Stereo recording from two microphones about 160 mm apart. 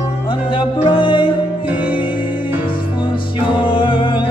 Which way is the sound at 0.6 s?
30° left (ahead or behind).